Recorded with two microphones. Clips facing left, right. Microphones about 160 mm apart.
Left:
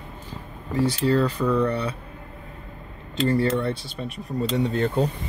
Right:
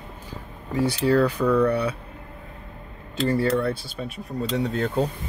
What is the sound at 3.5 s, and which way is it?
Speech, 5° right (ahead or behind).